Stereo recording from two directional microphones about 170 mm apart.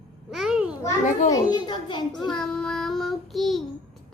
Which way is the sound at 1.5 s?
25° left (ahead or behind).